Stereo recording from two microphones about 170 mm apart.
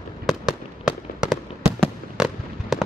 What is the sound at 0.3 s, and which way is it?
Fireworks, 5° right (ahead or behind).